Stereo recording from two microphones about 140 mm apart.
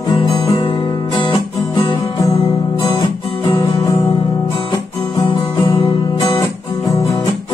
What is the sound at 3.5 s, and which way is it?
Guitar, 25° left (ahead or behind).